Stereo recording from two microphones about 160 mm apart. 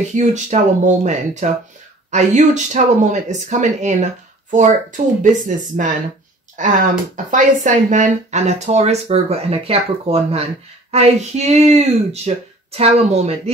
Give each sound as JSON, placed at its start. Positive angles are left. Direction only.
{"t": 0.1, "sound": "speech", "side_deg": -45}